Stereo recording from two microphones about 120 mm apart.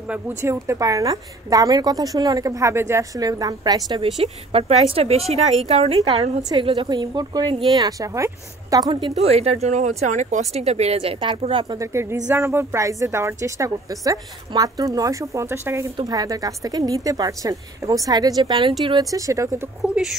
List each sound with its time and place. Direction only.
0.4 s a woman's voice: 25° right (ahead or behind)
3.9 s speech: 50° right (ahead or behind)
6.5 s a woman's voice: 45° right (ahead or behind); by 8.9 s 30° right (ahead or behind)
9.1 s speech: 60° right (ahead or behind)
11.8 s a woman's voice: 20° right (ahead or behind)
16.0 s a woman's voice: 35° right (ahead or behind)
19.0 s a woman's voice: 25° right (ahead or behind)
19.8 s speech: 5° right (ahead or behind)